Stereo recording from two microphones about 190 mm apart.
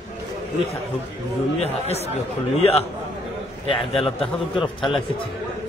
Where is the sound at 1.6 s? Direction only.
35° left (ahead or behind).